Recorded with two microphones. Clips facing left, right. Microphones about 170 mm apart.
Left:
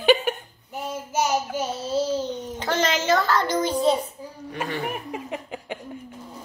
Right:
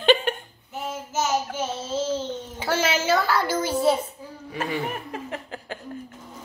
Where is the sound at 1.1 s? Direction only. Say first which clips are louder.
Left 1 dB; 15° left (ahead or behind).